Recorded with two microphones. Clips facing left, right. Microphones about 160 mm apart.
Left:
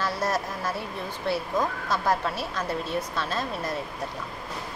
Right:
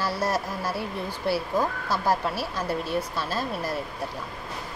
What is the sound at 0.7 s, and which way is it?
Speech, 5° right (ahead or behind).